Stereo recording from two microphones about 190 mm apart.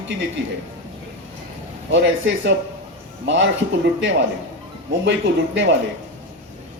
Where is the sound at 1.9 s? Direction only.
75° right (ahead or behind).